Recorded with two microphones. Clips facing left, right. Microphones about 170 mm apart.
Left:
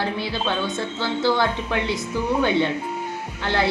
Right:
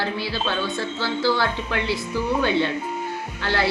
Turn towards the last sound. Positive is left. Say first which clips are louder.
# left 1 dB
turn(degrees=20)  # may be behind; listen again after turning